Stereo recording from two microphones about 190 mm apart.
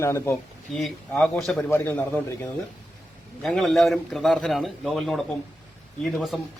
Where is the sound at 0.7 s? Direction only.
Centre (ahead or behind).